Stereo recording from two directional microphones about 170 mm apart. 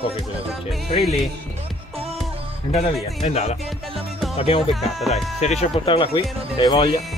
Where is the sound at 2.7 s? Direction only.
40° left (ahead or behind).